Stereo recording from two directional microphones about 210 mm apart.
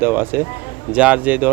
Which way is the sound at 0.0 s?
10° right (ahead or behind).